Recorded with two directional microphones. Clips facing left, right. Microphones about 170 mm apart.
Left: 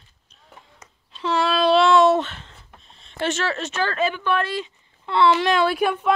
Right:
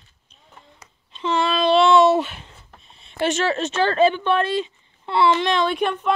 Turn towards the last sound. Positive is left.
turn(degrees=5)  # may be behind; listen again after turning